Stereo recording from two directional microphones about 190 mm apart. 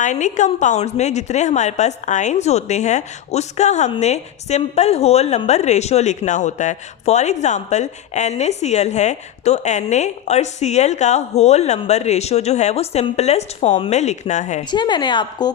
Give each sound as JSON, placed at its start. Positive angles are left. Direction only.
{"t": 0.0, "sound": "a woman's voice", "side_deg": 40}
{"t": 14.7, "sound": "a woman's voice", "side_deg": 25}